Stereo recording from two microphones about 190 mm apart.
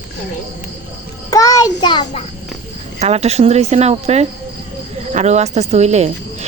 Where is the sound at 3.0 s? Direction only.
35° right (ahead or behind).